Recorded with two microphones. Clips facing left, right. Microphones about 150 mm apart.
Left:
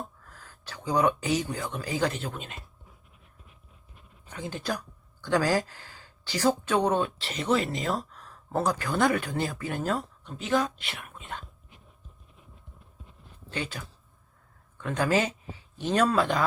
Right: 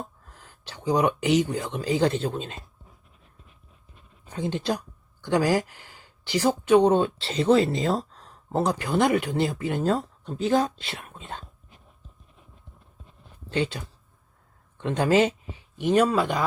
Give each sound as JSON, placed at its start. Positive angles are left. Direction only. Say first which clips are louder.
{"t": 0.0, "sound": "speech", "louder": "right 1 dB", "side_deg": -20}
{"t": 4.3, "sound": "speech", "louder": "right 6 dB", "side_deg": -25}
{"t": 13.5, "sound": "speech", "louder": "right 8 dB", "side_deg": -30}